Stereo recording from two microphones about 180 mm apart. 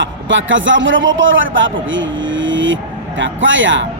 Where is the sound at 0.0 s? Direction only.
90° right.